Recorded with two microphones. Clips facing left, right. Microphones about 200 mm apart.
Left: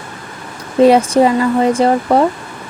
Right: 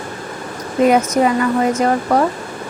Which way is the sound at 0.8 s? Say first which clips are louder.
Left 4 dB; 30° left (ahead or behind).